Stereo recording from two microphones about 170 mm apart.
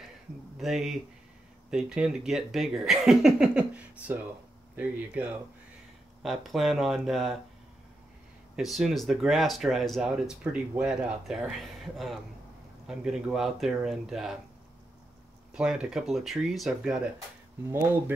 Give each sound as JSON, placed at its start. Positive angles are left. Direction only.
{"t": 0.6, "sound": "speech", "side_deg": 0}
{"t": 8.5, "sound": "speech", "side_deg": 0}
{"t": 15.5, "sound": "speech", "side_deg": -5}
{"t": 17.6, "sound": "speech", "side_deg": -15}